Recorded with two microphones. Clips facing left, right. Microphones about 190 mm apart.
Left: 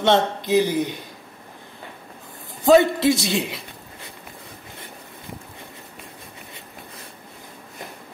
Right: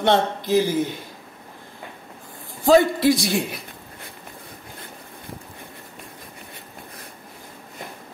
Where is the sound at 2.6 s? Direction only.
20° left (ahead or behind).